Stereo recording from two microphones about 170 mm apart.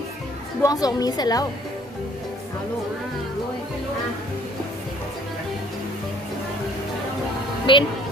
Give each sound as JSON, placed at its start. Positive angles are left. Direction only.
{"t": 0.6, "sound": "a woman's voice", "side_deg": 20}
{"t": 7.7, "sound": "a woman's voice", "side_deg": 30}